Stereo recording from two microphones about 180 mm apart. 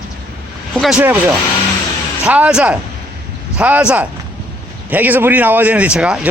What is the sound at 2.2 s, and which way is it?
A man's voice, 5° right (ahead or behind).